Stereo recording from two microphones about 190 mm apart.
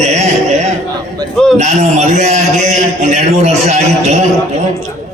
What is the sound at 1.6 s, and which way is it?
A man's voice, 35° right (ahead or behind).